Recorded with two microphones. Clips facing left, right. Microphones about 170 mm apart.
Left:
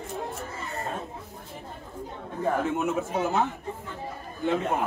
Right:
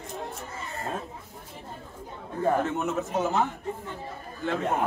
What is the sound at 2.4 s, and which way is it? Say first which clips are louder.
A man's voice: right 1 dB; 5° left (ahead or behind).